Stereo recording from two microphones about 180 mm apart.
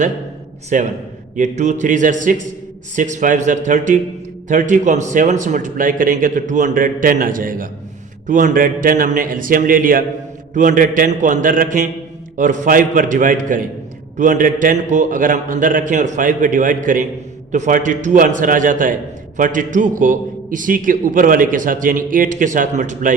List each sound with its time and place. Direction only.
0.7 s a man's voice: 45° right (ahead or behind)